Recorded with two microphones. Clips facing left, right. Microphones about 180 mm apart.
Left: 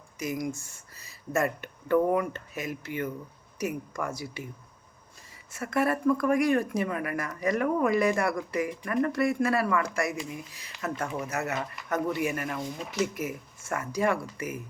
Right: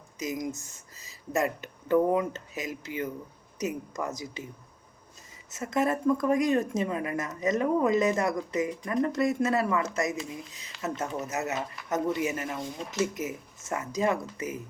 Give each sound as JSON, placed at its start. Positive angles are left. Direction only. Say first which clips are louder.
{"t": 0.2, "sound": "speech", "louder": "left 1 dB", "side_deg": -20}
{"t": 5.5, "sound": "speech", "louder": "even", "side_deg": -20}